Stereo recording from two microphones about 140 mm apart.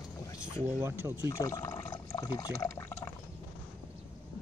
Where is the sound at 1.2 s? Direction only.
25° left (ahead or behind).